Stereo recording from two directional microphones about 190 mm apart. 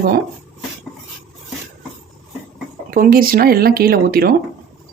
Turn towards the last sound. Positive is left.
turn(degrees=-50)  # may be behind; listen again after turning